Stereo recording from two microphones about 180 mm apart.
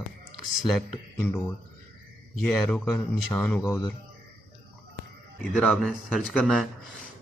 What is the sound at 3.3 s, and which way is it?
Speech, 5° left (ahead or behind).